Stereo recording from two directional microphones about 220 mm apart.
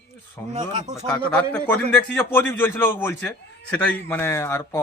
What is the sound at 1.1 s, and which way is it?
A man's voice, 5° left (ahead or behind).